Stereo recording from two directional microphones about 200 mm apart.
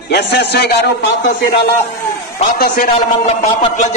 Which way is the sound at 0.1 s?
55° left (ahead or behind).